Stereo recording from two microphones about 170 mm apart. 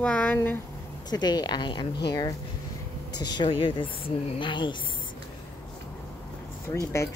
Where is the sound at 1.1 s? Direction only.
25° left (ahead or behind).